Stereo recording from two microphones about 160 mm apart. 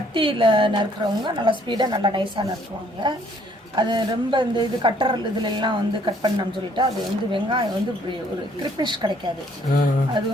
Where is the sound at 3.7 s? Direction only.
30° right (ahead or behind).